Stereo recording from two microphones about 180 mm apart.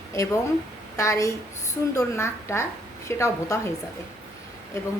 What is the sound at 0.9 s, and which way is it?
A woman's voice, 15° left (ahead or behind).